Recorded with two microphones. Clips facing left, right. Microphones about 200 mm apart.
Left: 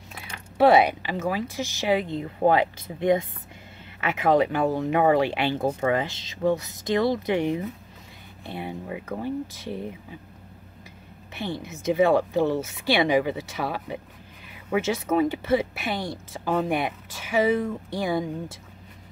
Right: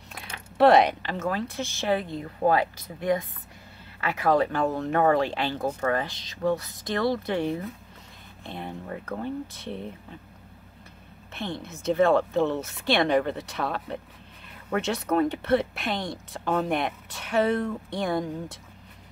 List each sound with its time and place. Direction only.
0.6 s speech: 5° left (ahead or behind)
11.3 s speech: 10° left (ahead or behind)